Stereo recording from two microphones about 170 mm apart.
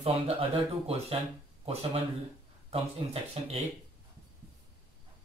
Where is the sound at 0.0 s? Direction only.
35° right (ahead or behind).